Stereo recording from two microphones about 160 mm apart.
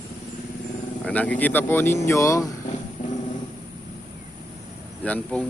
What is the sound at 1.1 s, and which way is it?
Speech, 10° left (ahead or behind).